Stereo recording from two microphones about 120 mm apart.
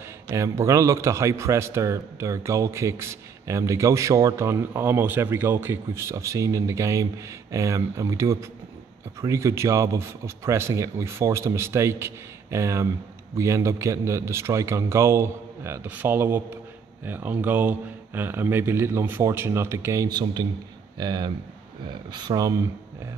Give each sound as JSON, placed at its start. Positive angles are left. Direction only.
{"t": 0.3, "sound": "a man's voice", "side_deg": -25}